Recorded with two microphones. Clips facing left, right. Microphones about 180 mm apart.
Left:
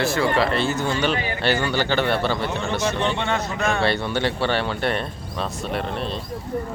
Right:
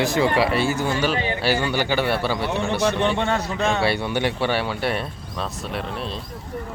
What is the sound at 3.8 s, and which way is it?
Speech, 10° right (ahead or behind).